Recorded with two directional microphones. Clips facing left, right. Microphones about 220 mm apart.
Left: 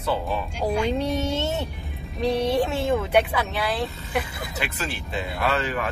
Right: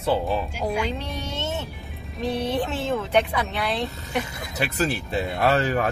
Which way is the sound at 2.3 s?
10° left (ahead or behind).